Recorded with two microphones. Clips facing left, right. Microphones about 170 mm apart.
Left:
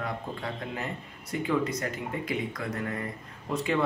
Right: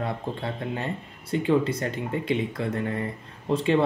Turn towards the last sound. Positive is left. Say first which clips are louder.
# right 6 dB
turn(degrees=-30)  # may be behind; listen again after turning